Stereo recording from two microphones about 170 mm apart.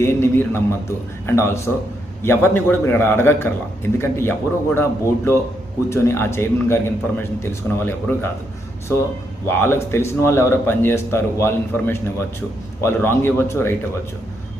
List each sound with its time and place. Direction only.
0.0 s a man's voice: 15° left (ahead or behind)
9.6 s a man's voice: 15° left (ahead or behind)